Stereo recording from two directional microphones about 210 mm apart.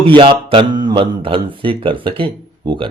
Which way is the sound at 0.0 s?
25° right (ahead or behind).